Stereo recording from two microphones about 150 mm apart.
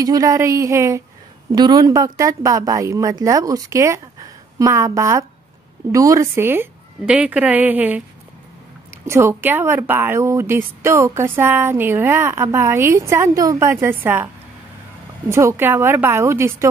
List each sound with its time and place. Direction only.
0.0 s a woman's voice: 25° right (ahead or behind)
9.0 s a woman's voice: 15° right (ahead or behind)